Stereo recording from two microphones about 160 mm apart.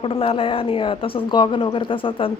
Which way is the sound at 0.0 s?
35° left (ahead or behind).